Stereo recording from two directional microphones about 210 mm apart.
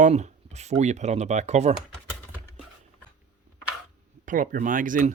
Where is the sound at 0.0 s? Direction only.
35° right (ahead or behind).